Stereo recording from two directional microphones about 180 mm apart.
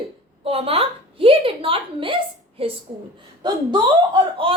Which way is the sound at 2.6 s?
30° right (ahead or behind).